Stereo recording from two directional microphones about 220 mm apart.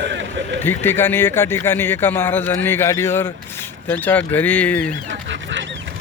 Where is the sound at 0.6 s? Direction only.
10° left (ahead or behind).